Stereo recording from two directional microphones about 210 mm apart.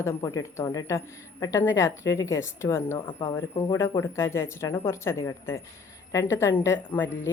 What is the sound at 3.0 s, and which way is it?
Speech, 25° left (ahead or behind).